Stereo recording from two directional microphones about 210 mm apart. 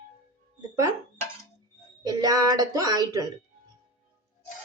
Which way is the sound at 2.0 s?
20° right (ahead or behind).